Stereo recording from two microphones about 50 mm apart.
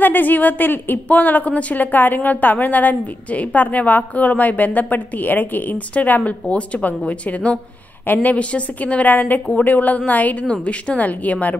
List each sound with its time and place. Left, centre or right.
0.0 s a woman's voice: left
10.4 s a woman's voice: left